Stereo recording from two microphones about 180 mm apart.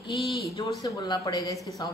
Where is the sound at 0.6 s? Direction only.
20° left (ahead or behind).